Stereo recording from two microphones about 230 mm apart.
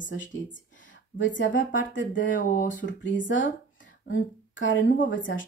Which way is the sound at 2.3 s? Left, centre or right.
Left.